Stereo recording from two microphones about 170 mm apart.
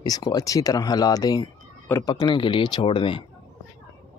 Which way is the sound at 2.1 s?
30° left (ahead or behind).